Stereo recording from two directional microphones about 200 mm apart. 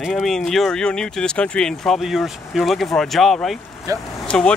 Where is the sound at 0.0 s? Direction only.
Centre (ahead or behind).